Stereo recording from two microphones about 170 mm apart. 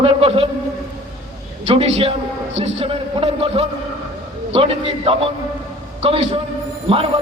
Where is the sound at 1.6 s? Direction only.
35° right (ahead or behind).